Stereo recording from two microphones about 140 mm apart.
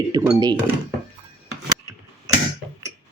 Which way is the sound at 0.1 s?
25° right (ahead or behind).